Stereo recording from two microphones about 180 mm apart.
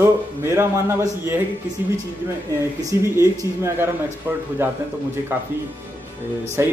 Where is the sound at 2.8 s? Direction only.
15° right (ahead or behind).